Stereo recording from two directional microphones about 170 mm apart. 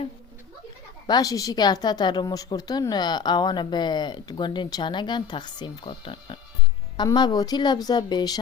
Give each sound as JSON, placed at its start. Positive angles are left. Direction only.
{"t": 1.0, "sound": "a woman's voice", "side_deg": 20}